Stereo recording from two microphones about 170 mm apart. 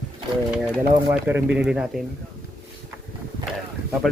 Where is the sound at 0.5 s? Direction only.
5° right (ahead or behind).